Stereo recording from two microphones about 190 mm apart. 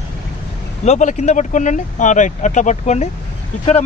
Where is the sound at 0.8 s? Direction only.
40° left (ahead or behind).